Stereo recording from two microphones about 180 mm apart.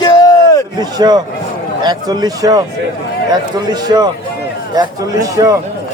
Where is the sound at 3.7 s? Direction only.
20° right (ahead or behind).